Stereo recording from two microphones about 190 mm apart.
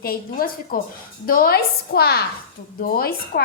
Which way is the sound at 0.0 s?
50° left (ahead or behind).